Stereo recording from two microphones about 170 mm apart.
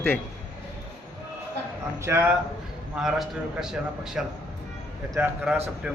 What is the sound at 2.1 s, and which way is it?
Speech, 15° right (ahead or behind).